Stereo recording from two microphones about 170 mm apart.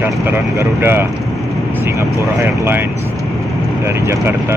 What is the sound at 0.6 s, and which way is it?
Speech, 15° right (ahead or behind).